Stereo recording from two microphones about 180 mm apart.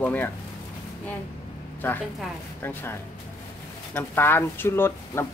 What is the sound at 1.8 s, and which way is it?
Speech, 10° left (ahead or behind).